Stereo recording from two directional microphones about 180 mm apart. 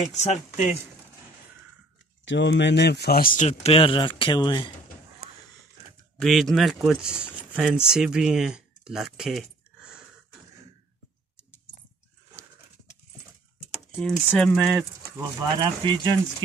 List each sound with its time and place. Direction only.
0.1 s speech: 40° left (ahead or behind)
2.2 s speech: 90° left; by 3.4 s 55° left (ahead or behind)
3.4 s speech: 35° left (ahead or behind)
6.1 s speech: centre (ahead or behind)
13.9 s speech: 5° left (ahead or behind)
15.5 s speech: 25° right (ahead or behind)